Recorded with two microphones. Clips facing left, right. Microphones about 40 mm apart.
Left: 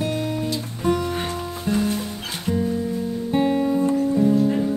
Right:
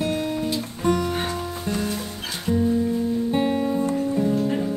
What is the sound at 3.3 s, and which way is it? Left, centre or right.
Music, centre.